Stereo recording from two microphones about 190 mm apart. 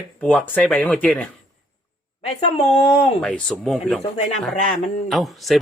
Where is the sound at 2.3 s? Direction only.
30° left (ahead or behind).